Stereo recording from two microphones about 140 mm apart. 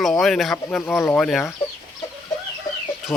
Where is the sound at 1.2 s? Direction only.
5° left (ahead or behind).